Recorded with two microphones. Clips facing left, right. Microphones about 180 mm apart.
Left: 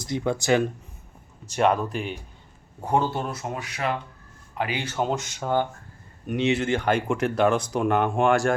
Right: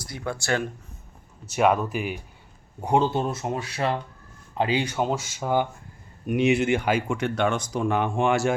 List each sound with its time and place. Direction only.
0.0 s speech: 20° left (ahead or behind)
1.5 s speech: 5° right (ahead or behind)
2.8 s speech: 15° right (ahead or behind)
4.9 s speech: centre (ahead or behind)